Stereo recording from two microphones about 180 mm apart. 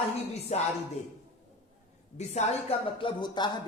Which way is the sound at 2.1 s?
40° left (ahead or behind).